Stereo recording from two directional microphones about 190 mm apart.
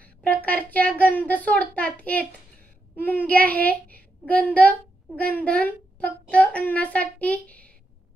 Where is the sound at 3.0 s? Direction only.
10° left (ahead or behind).